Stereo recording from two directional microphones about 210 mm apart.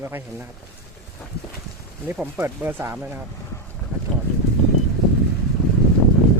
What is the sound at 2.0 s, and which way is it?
Speech, 10° right (ahead or behind).